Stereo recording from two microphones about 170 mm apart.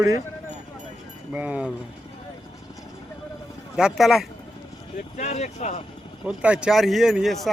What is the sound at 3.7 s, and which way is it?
Speech, 5° right (ahead or behind).